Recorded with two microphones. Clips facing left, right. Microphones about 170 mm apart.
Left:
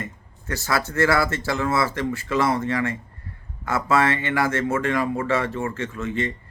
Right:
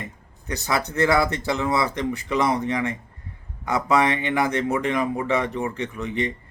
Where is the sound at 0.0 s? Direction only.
20° right (ahead or behind).